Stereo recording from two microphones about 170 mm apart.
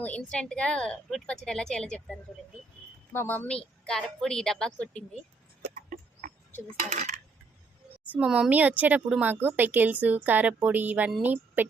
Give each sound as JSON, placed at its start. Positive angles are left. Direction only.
{"t": 0.0, "sound": "a woman's voice", "side_deg": 10}
{"t": 6.7, "sound": "coin", "side_deg": -45}
{"t": 8.1, "sound": "speech", "side_deg": -5}